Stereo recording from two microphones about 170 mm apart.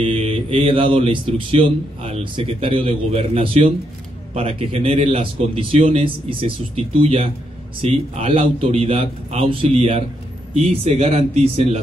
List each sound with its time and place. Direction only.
0.0 s speech: 30° right (ahead or behind)